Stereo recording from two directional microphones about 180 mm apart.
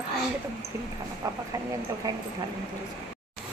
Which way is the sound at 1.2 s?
20° right (ahead or behind).